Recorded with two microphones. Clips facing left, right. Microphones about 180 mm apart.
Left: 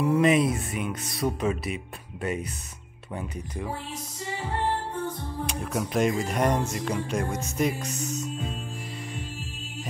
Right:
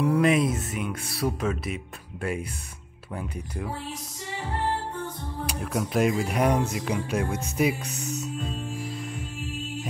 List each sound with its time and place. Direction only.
0.0 s speech: centre (ahead or behind)
5.5 s speech: centre (ahead or behind)
7.6 s music: 5° right (ahead or behind)
7.9 s music: 60° right (ahead or behind)